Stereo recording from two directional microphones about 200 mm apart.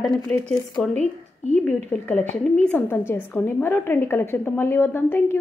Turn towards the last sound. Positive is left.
turn(degrees=10)  # may be behind; listen again after turning